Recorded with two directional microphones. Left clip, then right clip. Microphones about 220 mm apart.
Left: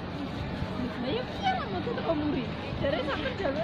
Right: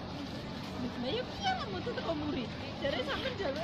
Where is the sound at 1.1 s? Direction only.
45° right (ahead or behind).